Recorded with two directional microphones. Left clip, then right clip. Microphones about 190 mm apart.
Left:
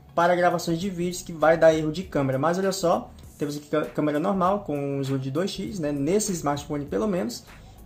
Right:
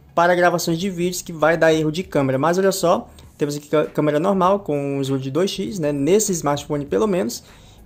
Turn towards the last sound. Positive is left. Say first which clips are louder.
# right 7 dB
turn(degrees=-40)  # may be behind; listen again after turning